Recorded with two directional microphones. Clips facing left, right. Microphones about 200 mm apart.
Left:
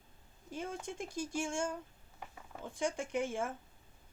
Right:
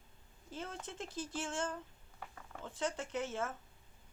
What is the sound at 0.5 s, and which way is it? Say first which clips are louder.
Speech: left 4 dB; 15° left (ahead or behind).